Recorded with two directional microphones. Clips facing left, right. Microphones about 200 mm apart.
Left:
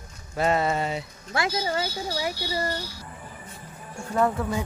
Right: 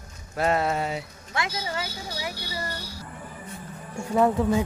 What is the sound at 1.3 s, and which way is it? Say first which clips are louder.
Speech: left 4 dB; 35° left (ahead or behind).